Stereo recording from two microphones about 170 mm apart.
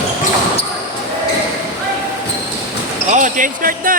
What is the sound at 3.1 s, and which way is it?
Basketball bounce, 50° right (ahead or behind).